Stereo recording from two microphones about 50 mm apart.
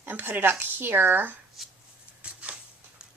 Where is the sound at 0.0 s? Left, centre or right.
Right.